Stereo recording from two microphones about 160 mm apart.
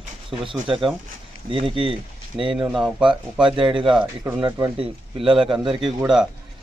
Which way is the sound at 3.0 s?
30° right (ahead or behind).